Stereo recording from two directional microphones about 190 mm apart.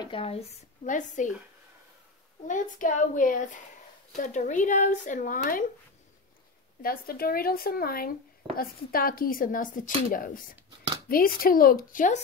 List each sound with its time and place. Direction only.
0.0 s speech: 30° left (ahead or behind)
0.8 s speech: 40° left (ahead or behind)
2.4 s speech: 45° left (ahead or behind)
6.8 s speech: 50° left (ahead or behind)